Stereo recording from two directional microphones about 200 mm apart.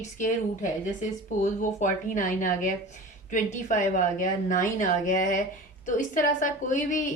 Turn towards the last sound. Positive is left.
turn(degrees=40)  # may be behind; listen again after turning